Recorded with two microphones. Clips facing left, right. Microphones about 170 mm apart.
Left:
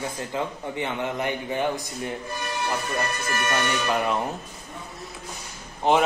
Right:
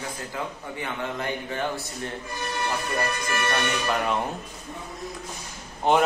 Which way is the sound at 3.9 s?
5° left (ahead or behind).